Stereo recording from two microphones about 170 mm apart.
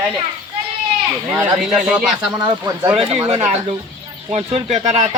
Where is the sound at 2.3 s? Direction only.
20° right (ahead or behind).